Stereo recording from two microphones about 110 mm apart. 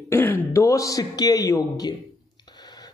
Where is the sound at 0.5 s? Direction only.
30° left (ahead or behind).